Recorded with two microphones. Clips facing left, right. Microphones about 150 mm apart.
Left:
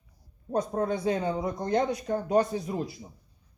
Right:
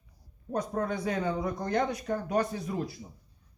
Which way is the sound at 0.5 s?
30° left (ahead or behind).